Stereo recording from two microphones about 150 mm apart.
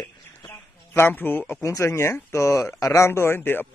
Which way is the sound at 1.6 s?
20° left (ahead or behind).